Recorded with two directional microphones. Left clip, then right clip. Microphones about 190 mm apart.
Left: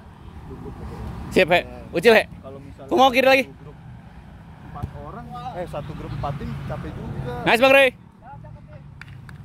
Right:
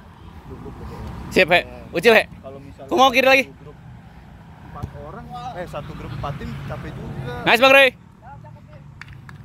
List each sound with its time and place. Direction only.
0.8 s vehicle: 15° left (ahead or behind)
1.9 s speech: 15° left (ahead or behind)
5.6 s speech: 40° left (ahead or behind)
7.4 s speech: 10° left (ahead or behind)